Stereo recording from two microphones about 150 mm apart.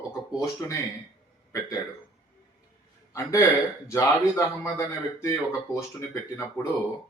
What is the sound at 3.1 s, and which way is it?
Speech, 20° left (ahead or behind).